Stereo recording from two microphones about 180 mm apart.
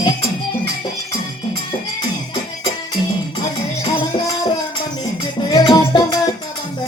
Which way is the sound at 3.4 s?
25° left (ahead or behind).